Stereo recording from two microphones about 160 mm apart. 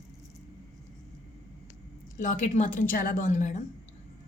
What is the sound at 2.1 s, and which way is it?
A woman's voice, 55° left (ahead or behind).